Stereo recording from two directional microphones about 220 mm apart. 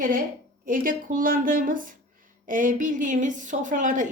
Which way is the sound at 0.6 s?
40° right (ahead or behind).